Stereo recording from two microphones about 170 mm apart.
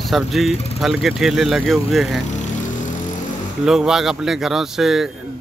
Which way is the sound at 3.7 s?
5° right (ahead or behind).